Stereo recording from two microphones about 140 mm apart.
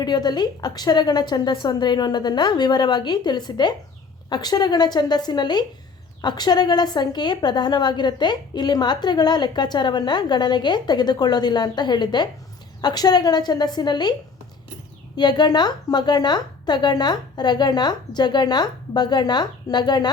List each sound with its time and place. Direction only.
0.0 s a woman's voice: 30° left (ahead or behind)